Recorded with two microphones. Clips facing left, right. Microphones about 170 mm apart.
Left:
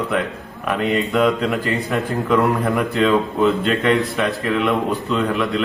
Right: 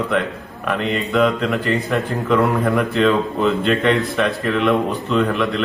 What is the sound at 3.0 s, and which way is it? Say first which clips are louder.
A man's voice: left 2 dB; 5° left (ahead or behind).